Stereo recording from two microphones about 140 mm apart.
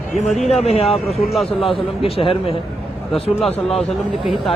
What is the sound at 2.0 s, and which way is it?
Speech, 40° left (ahead or behind).